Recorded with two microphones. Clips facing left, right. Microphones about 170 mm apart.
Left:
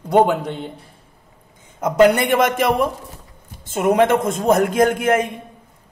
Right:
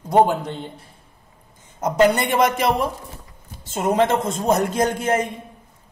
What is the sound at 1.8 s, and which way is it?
Speech, 55° left (ahead or behind).